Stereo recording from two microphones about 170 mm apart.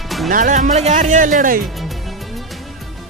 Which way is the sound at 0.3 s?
50° right (ahead or behind).